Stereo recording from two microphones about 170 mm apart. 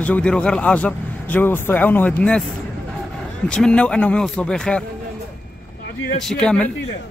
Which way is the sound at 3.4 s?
5° left (ahead or behind).